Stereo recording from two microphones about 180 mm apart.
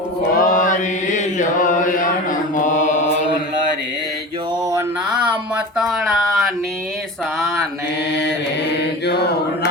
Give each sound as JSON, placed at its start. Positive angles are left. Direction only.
{"t": 0.3, "sound": "mantra", "side_deg": 50}
{"t": 5.1, "sound": "a sound", "side_deg": -5}
{"t": 7.4, "sound": "mantra", "side_deg": 0}